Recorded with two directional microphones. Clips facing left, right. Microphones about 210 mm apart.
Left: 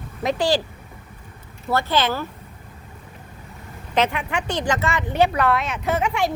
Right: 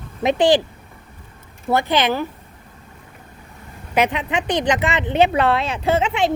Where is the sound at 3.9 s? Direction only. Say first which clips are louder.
Right 2 dB; 15° right (ahead or behind).